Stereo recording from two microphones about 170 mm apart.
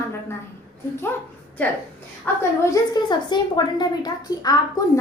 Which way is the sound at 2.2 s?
15° left (ahead or behind).